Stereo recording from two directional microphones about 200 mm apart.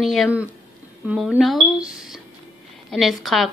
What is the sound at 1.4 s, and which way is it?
Speech, centre (ahead or behind).